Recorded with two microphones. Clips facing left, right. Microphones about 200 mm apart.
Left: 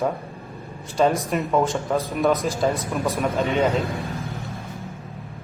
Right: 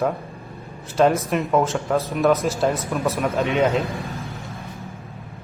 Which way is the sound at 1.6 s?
15° left (ahead or behind).